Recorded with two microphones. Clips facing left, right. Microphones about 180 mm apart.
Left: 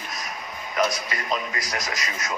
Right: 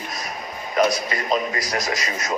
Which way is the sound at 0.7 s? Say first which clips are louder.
Right 5 dB; 30° right (ahead or behind).